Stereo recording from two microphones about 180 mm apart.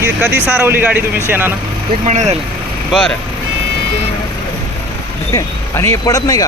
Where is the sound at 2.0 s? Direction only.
40° right (ahead or behind).